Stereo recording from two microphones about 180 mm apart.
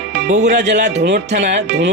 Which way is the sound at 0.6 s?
40° right (ahead or behind).